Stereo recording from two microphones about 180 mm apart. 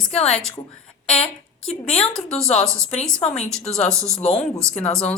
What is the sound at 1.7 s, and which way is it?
A woman's voice, 35° left (ahead or behind).